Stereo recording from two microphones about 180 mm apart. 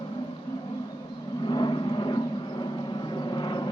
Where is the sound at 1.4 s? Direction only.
25° left (ahead or behind).